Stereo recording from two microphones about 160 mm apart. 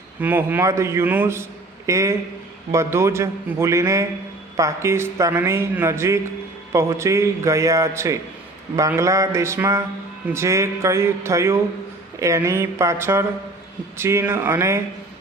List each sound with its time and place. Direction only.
0.2 s a man's voice: 10° right (ahead or behind)